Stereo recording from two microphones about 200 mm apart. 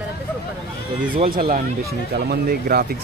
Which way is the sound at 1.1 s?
45° right (ahead or behind).